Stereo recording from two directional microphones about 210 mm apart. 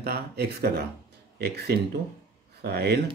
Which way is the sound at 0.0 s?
45° right (ahead or behind).